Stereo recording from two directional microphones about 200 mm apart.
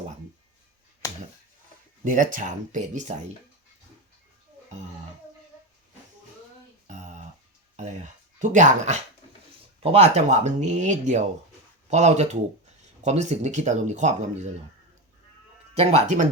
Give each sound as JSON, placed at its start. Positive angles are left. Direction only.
{"t": 2.0, "sound": "speech", "side_deg": -40}
{"t": 6.8, "sound": "a sound", "side_deg": -35}
{"t": 8.4, "sound": "speech", "side_deg": -40}
{"t": 15.7, "sound": "speech", "side_deg": -30}